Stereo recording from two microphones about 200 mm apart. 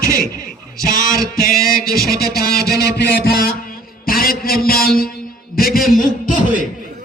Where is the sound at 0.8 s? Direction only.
45° left (ahead or behind).